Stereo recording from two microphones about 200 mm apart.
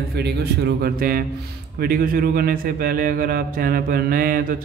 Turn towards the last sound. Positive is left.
turn(degrees=-45)  # may be behind; listen again after turning